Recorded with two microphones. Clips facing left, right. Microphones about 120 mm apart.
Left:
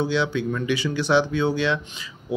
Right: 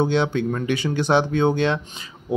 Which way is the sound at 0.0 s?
50° right (ahead or behind).